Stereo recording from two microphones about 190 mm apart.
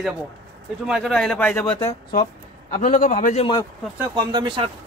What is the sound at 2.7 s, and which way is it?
Speech, 45° left (ahead or behind).